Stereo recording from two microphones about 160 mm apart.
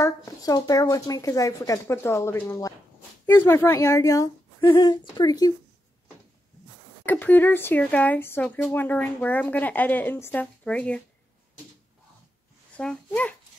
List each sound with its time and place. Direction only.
0.0 s speech: 20° left (ahead or behind)
7.1 s speech: 10° left (ahead or behind)
12.7 s speech: 10° left (ahead or behind)